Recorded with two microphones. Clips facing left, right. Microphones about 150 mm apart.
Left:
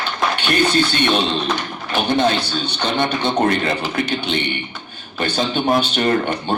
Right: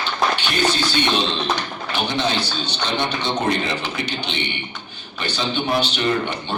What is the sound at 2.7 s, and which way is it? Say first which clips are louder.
A man's voice: left 4 dB; 55° left (ahead or behind).